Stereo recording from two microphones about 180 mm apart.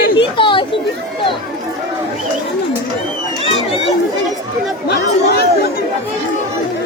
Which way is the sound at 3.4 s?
35° left (ahead or behind).